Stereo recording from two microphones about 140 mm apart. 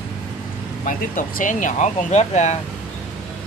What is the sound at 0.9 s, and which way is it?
Speech, 70° left (ahead or behind).